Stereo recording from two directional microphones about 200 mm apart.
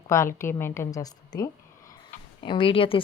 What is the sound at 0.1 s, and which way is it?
A woman's voice, 15° left (ahead or behind).